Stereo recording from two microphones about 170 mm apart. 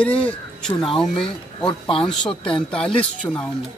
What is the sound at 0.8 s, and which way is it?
Speech, 30° left (ahead or behind).